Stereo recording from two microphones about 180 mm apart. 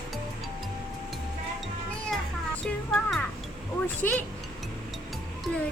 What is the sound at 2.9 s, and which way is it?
Music, centre (ahead or behind).